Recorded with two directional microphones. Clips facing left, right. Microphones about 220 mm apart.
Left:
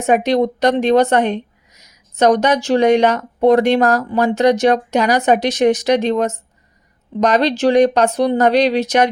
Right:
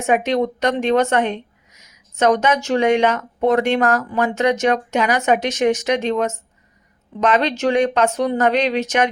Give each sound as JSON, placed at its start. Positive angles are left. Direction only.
{"t": 0.0, "sound": "speech", "side_deg": 35}